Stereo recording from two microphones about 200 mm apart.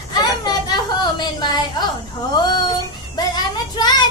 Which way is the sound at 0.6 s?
20° left (ahead or behind).